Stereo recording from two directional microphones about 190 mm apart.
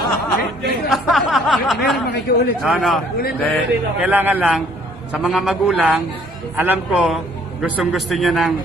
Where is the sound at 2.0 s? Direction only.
60° left (ahead or behind).